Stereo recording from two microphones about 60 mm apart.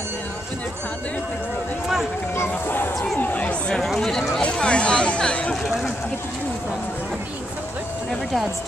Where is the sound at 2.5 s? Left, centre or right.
Left.